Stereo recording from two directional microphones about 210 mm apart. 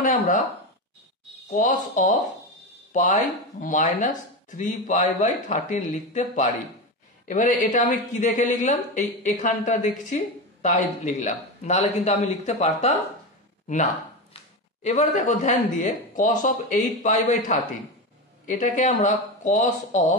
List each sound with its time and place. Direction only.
0.0 s speech: 40° left (ahead or behind)
1.5 s speech: 35° left (ahead or behind)
14.3 s speech: 30° left (ahead or behind)